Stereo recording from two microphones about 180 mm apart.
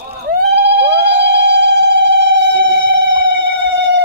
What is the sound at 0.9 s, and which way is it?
Siren, 70° right (ahead or behind).